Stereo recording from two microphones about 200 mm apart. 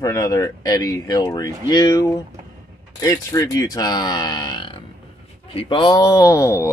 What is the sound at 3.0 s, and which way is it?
Speech, 15° left (ahead or behind).